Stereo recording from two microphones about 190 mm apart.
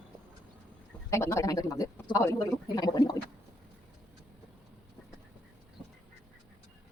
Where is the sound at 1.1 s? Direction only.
15° left (ahead or behind).